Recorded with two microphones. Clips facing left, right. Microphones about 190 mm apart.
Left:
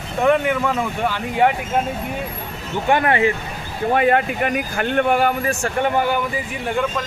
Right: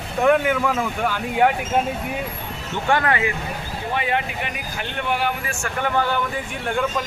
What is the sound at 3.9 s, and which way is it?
A man's voice, 50° left (ahead or behind).